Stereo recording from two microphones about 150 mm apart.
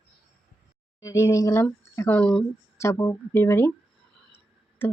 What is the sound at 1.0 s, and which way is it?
Speech, 20° left (ahead or behind).